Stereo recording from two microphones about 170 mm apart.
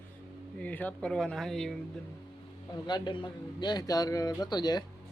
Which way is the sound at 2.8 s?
25° left (ahead or behind).